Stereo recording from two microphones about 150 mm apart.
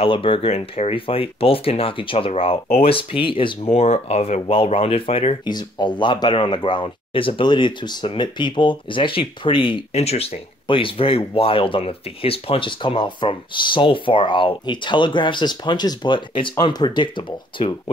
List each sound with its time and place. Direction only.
0.0 s speech: 35° left (ahead or behind)
3.7 s speech: 45° left (ahead or behind)
5.4 s speech: 30° left (ahead or behind)